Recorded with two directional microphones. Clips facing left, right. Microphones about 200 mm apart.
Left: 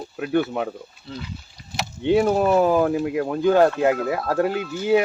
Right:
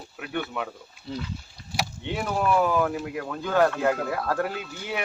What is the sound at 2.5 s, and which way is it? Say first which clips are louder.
Speech: left 5 dB; 35° left (ahead or behind).